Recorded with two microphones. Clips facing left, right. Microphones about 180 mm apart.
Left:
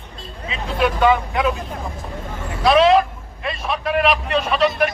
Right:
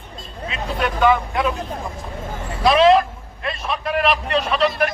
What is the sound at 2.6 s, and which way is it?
A man's voice, centre (ahead or behind).